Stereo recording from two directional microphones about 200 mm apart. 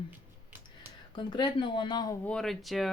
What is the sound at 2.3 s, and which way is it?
Speech, 5° left (ahead or behind).